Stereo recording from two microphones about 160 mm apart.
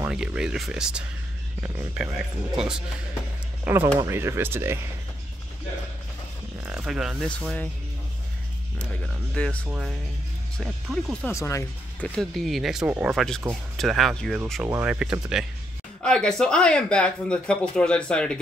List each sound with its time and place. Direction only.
0.0 s speech: 5° right (ahead or behind)
3.6 s speech: 15° right (ahead or behind)
6.6 s speech: 5° right (ahead or behind)
8.7 s speech: 5° left (ahead or behind)
11.2 s speech: 20° left (ahead or behind)
12.0 s speech: 5° left (ahead or behind)